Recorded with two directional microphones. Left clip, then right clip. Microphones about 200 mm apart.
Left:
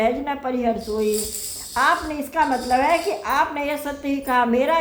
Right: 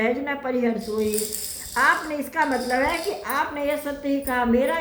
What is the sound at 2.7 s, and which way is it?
A woman's voice, 45° left (ahead or behind).